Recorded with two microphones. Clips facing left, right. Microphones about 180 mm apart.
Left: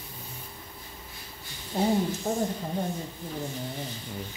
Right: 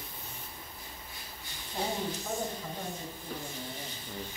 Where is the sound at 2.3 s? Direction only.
35° left (ahead or behind).